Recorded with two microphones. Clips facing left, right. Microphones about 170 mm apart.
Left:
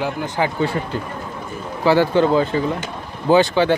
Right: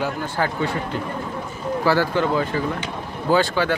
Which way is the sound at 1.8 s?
20° left (ahead or behind).